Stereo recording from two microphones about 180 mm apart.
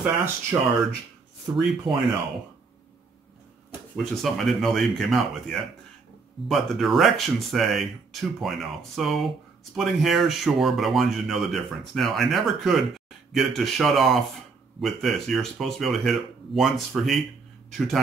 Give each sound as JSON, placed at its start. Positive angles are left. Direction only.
{"t": 0.0, "sound": "speech", "side_deg": -10}
{"t": 3.9, "sound": "speech", "side_deg": 5}